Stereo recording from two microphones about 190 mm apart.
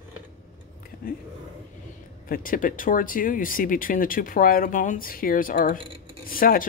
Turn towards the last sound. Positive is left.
turn(degrees=50)  # may be behind; listen again after turning